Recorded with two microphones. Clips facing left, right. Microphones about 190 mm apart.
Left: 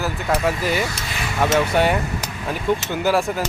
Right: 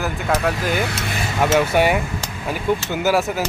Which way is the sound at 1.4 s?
10° right (ahead or behind).